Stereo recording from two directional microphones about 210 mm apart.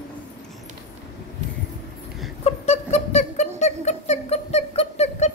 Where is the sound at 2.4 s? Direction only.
30° left (ahead or behind).